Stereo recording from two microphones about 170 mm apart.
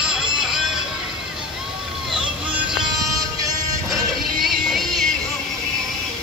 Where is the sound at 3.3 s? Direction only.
20° right (ahead or behind).